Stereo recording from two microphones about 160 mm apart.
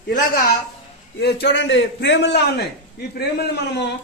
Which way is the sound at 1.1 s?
90° left.